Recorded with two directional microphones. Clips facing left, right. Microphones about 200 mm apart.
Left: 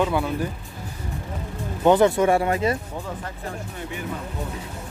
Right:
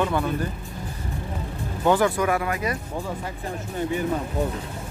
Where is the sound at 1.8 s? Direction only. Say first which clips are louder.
Left 4 dB; 20° left (ahead or behind).